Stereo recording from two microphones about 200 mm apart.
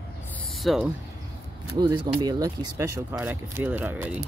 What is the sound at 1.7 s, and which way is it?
Speech, 20° right (ahead or behind).